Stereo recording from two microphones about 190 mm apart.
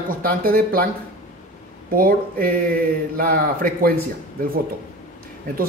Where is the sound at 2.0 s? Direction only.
50° right (ahead or behind).